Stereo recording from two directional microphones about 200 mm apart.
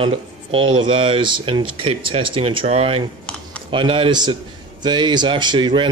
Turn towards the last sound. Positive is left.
turn(degrees=-25)  # may be behind; listen again after turning